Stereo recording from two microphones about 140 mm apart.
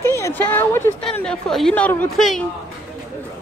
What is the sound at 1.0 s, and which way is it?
Speech, 5° left (ahead or behind).